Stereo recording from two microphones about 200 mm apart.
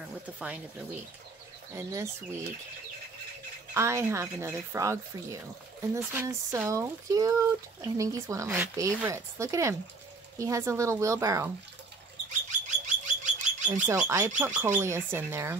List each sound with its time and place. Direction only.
1.8 s speech: 15° right (ahead or behind)
3.7 s speech: 15° right (ahead or behind)
12.3 s bird: 35° right (ahead or behind)
13.8 s speech: 15° right (ahead or behind)